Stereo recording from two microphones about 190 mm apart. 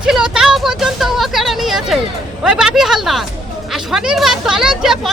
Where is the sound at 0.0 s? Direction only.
5° right (ahead or behind).